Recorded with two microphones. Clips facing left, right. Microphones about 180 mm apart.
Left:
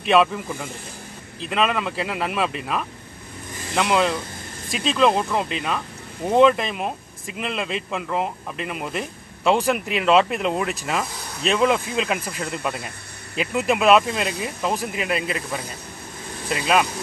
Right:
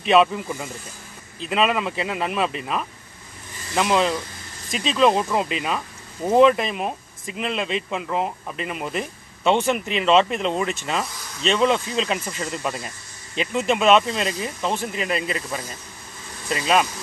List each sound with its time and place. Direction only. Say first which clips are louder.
0.0 s speech: right 1 dB; centre (ahead or behind)
12.4 s speech: even; 60° left (ahead or behind)
13.4 s speech: even; 5° left (ahead or behind)